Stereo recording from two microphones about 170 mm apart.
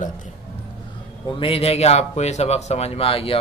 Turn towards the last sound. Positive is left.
turn(degrees=35)  # may be behind; listen again after turning